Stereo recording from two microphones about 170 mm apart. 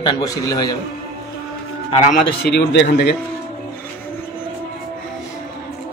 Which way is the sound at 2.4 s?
85° left.